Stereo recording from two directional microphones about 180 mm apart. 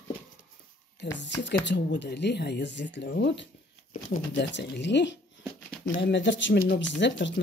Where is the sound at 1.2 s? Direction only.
80° left.